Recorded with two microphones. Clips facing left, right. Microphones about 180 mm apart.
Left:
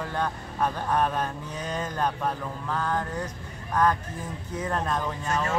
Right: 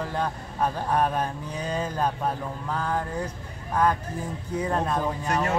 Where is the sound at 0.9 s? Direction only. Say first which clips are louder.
Right 2 dB; 15° right (ahead or behind).